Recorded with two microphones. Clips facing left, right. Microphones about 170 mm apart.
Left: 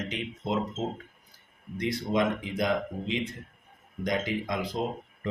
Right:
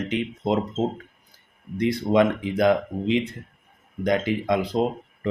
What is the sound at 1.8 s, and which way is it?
Speech, 60° right (ahead or behind).